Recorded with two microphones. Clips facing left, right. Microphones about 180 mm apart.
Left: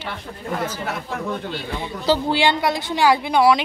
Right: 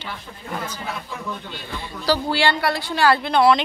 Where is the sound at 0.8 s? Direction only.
65° left (ahead or behind).